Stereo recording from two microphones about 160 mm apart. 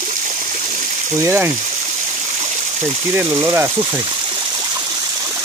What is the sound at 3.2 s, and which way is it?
Speech, 15° right (ahead or behind).